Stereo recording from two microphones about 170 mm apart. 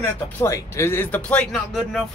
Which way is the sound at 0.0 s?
15° left (ahead or behind).